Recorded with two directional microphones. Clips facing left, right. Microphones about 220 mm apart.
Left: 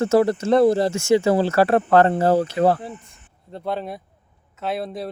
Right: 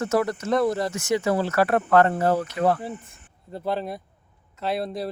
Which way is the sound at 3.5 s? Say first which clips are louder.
Even; centre (ahead or behind).